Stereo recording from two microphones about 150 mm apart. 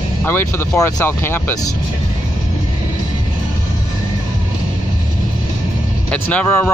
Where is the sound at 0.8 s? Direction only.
15° left (ahead or behind).